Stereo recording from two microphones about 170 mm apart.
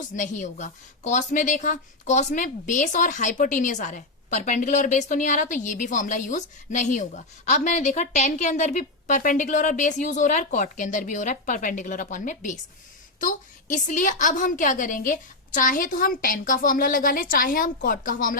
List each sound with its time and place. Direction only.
0.1 s a woman's voice: 50° left (ahead or behind)